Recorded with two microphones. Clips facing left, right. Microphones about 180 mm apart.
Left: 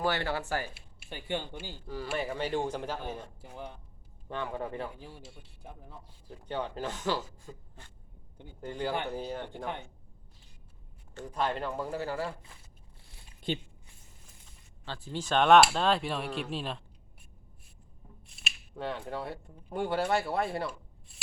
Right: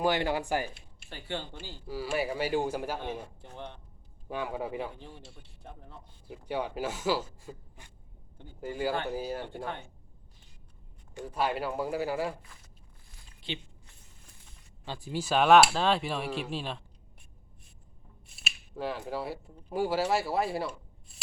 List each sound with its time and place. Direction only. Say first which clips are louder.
0.0 s speech: right 3 dB; 15° right (ahead or behind)
0.7 s speech: left 2 dB; 10° left (ahead or behind)
1.9 s speech: right 3 dB; 10° right (ahead or behind)
3.4 s speech: even; 5° left (ahead or behind)
4.3 s speech: right 1 dB; 10° right (ahead or behind)
4.9 s speech: even; 5° left (ahead or behind)
6.2 s speech: right 2 dB; 10° right (ahead or behind)
8.6 s speech: right 2 dB; 5° right (ahead or behind)
11.1 s speech: right 1 dB; 10° right (ahead or behind)
13.5 s speech: left 5 dB; 45° left (ahead or behind)
14.8 s speech: right 2 dB; 10° right (ahead or behind)
18.3 s speech: right 1 dB; 5° right (ahead or behind)